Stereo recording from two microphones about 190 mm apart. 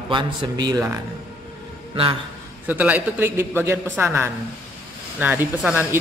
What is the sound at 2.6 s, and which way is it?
A man's voice, 10° right (ahead or behind).